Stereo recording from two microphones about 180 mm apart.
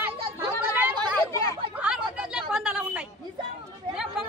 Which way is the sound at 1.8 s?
5° right (ahead or behind).